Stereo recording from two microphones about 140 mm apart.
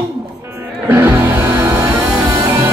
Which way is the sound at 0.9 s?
15° right (ahead or behind).